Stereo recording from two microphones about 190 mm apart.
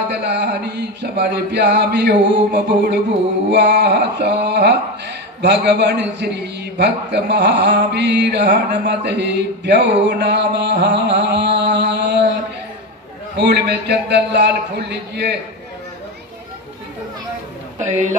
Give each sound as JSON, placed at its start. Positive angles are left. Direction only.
{"t": 0.1, "sound": "speech", "side_deg": -60}
{"t": 13.4, "sound": "speech", "side_deg": -60}